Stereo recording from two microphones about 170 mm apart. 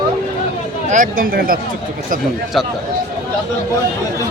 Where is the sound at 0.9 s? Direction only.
50° right (ahead or behind).